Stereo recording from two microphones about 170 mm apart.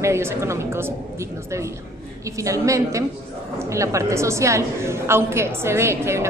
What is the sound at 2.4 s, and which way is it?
A woman's voice, 20° right (ahead or behind).